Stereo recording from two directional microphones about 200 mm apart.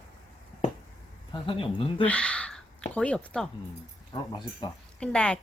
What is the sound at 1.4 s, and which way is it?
Speech, 25° left (ahead or behind).